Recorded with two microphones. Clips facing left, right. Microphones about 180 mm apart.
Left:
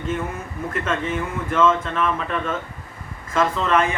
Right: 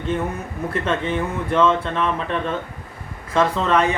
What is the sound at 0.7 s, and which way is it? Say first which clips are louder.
Speech: right 2 dB; 35° right (ahead or behind).